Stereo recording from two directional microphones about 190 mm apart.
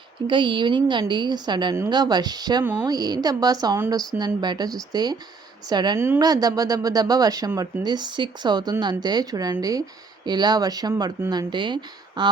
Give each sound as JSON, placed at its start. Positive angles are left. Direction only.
{"t": 0.3, "sound": "a woman's voice", "side_deg": -25}